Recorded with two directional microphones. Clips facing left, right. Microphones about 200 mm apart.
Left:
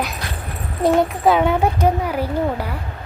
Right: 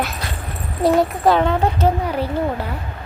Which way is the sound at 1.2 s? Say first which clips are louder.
Even; 5° left (ahead or behind).